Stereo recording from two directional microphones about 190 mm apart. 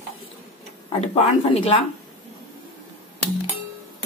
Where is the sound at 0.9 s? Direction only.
30° left (ahead or behind).